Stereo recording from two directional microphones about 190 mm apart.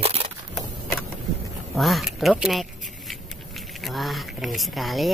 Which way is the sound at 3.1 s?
Centre (ahead or behind).